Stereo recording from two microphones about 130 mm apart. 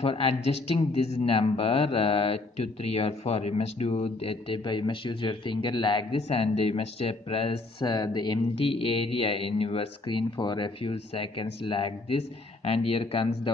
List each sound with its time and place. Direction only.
0.0 s speech: 45° left (ahead or behind)
6.1 s speech: 50° left (ahead or behind); by 8.4 s 35° left (ahead or behind)
8.5 s speech: 45° left (ahead or behind)